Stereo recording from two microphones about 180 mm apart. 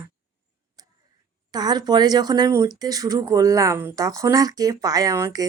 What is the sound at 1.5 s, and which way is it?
A woman's voice, 20° right (ahead or behind).